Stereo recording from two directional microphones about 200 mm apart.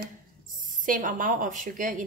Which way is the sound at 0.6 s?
45° right (ahead or behind).